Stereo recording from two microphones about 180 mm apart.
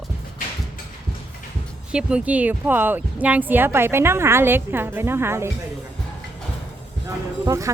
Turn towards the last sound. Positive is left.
turn(degrees=-15)  # may be behind; listen again after turning